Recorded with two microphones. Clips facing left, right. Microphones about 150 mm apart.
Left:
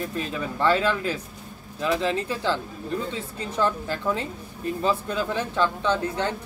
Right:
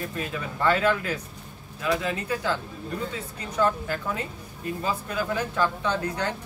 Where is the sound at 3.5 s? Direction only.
25° left (ahead or behind).